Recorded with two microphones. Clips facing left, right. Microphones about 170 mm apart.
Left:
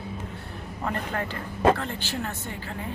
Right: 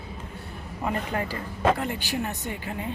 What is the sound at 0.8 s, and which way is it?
A woman's voice, 10° right (ahead or behind).